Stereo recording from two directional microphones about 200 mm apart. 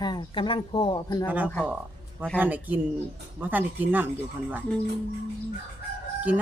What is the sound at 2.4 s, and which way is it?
Speech, 10° right (ahead or behind).